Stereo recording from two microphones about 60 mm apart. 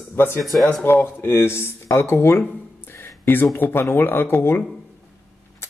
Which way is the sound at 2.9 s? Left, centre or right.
Left.